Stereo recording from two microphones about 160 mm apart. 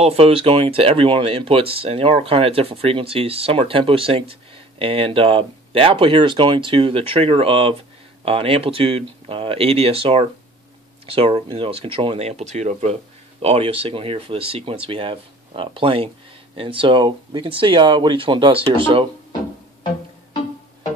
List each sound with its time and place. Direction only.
0.0 s speech: 40° right (ahead or behind)